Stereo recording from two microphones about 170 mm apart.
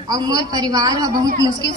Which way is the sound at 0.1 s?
20° right (ahead or behind).